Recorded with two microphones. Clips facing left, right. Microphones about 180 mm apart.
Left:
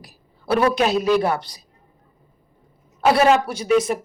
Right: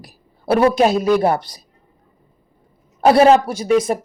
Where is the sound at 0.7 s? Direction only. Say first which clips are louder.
Right 5 dB; 45° right (ahead or behind).